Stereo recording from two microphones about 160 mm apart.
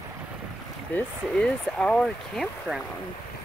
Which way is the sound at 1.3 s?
5° left (ahead or behind).